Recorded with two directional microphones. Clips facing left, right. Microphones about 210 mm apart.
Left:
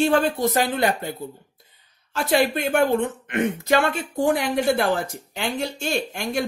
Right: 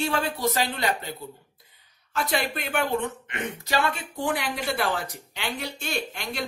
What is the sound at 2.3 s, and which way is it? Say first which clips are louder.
Speech: left 9 dB; 45° left (ahead or behind).